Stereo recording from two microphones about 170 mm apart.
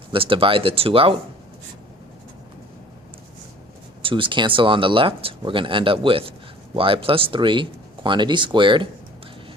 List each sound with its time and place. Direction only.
0.1 s speech: 30° right (ahead or behind)
4.0 s speech: 30° right (ahead or behind)